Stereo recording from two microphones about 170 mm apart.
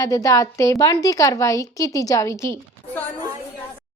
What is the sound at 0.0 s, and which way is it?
A woman's voice, 20° left (ahead or behind).